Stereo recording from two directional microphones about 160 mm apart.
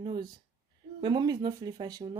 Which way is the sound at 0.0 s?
30° right (ahead or behind).